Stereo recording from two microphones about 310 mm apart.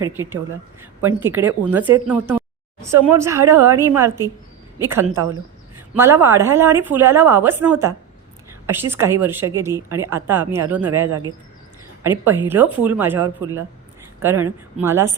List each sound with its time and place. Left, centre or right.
0.0 s a woman's voice: centre